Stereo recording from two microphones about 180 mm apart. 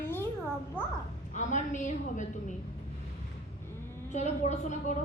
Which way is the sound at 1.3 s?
40° left (ahead or behind).